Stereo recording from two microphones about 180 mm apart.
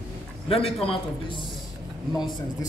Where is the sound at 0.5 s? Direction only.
35° left (ahead or behind).